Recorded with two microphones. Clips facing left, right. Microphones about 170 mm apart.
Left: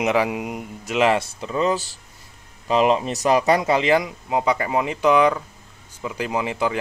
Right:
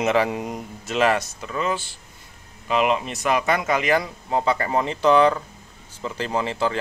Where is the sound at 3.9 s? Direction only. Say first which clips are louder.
Left 2 dB; 15° left (ahead or behind).